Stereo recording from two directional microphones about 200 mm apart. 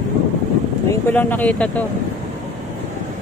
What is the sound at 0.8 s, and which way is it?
Speech, 10° left (ahead or behind).